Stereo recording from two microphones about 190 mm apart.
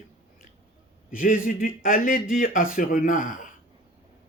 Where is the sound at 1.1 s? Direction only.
45° left (ahead or behind).